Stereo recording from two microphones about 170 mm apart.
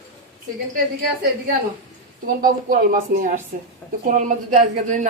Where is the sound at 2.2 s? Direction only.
55° right (ahead or behind).